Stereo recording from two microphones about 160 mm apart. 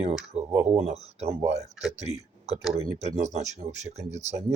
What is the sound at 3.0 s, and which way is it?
Speech, 45° right (ahead or behind).